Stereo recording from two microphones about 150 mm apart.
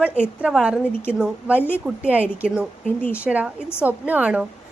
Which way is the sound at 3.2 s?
10° right (ahead or behind).